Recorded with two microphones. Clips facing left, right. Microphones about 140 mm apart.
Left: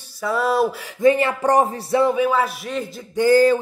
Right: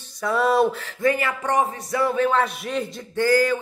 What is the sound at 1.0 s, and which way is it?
A woman's voice, 25° left (ahead or behind).